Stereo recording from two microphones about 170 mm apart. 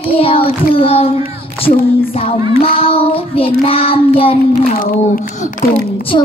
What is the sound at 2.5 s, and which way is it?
Child singing, 35° left (ahead or behind).